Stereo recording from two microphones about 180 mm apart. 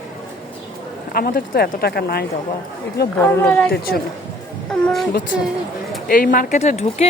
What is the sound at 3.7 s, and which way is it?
Speech, 60° left (ahead or behind).